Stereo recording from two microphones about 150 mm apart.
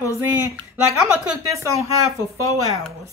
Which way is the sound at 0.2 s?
15° right (ahead or behind).